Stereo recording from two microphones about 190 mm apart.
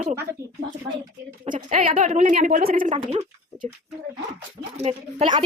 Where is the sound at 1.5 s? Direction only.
45° right (ahead or behind).